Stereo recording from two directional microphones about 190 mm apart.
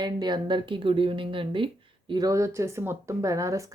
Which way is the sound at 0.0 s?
25° right (ahead or behind).